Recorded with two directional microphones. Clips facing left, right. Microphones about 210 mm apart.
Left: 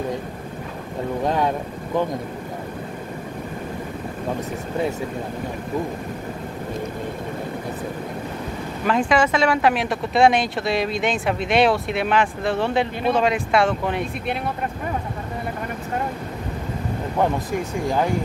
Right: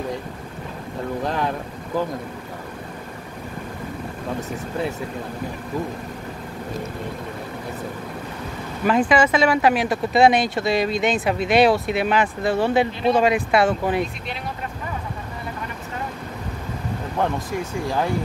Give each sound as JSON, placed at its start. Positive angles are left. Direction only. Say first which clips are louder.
{"t": 8.8, "sound": "speech", "louder": "right 2 dB", "side_deg": 0}
{"t": 14.2, "sound": "speech", "louder": "left 6 dB", "side_deg": 55}